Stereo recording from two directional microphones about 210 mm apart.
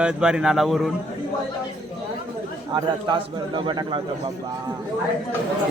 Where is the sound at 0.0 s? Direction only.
5° right (ahead or behind).